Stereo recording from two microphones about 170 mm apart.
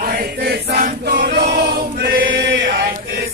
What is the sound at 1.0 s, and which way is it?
Choir, 70° right (ahead or behind).